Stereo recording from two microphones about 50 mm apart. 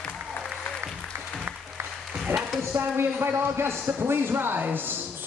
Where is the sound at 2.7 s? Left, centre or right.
Right.